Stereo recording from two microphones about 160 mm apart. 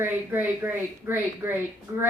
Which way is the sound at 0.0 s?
10° right (ahead or behind).